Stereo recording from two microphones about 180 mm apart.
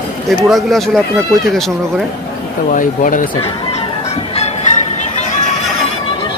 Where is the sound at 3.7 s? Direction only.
35° left (ahead or behind).